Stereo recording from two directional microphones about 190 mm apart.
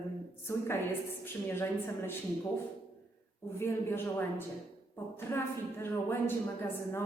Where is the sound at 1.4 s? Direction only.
10° left (ahead or behind).